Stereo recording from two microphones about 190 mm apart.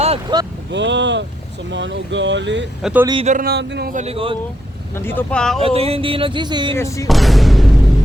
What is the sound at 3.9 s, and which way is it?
Speech, 35° right (ahead or behind).